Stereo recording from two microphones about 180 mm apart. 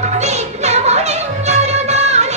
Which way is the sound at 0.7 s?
40° right (ahead or behind).